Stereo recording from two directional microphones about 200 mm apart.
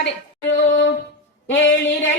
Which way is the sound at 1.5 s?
75° left (ahead or behind).